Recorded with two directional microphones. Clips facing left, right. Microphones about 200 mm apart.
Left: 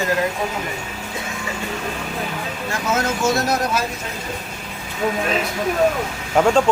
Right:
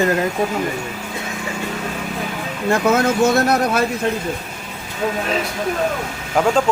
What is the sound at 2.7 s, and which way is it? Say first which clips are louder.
Speech: right 7 dB; 60° right (ahead or behind).